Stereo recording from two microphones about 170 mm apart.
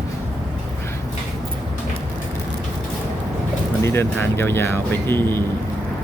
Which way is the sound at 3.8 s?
15° left (ahead or behind).